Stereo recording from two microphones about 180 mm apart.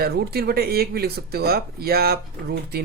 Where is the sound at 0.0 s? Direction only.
60° right (ahead or behind).